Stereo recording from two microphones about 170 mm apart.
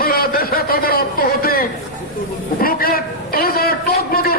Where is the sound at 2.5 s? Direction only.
60° left (ahead or behind).